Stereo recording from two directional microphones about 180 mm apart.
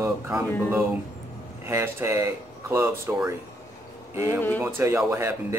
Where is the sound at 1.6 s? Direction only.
15° right (ahead or behind).